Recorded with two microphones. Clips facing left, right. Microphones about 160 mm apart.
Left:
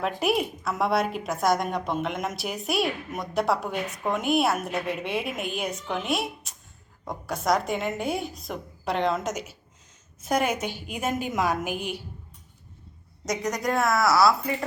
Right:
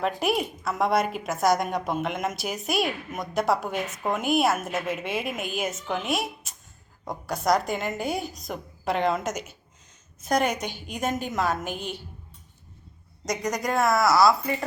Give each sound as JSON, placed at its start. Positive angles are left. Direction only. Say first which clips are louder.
{"t": 0.0, "sound": "a woman's voice", "louder": "even", "side_deg": 0}
{"t": 13.2, "sound": "a woman's voice", "louder": "even", "side_deg": 0}